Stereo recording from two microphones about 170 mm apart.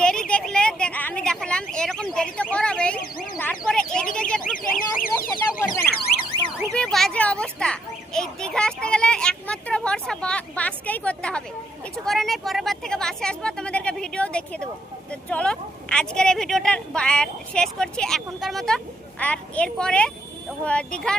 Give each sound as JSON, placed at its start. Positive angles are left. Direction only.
{"t": 0.0, "sound": "speech", "side_deg": 5}
{"t": 4.5, "sound": "car alarm", "side_deg": 55}
{"t": 5.9, "sound": "car alarm", "side_deg": 10}
{"t": 6.7, "sound": "a sound", "side_deg": 5}
{"t": 12.0, "sound": "a child's voice", "side_deg": 0}